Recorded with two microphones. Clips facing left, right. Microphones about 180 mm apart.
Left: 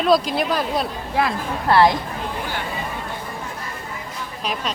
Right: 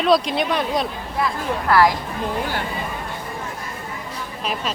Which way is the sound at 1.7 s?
25° left (ahead or behind).